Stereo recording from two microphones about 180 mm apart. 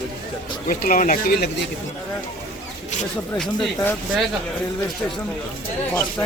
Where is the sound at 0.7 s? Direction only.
50° left (ahead or behind).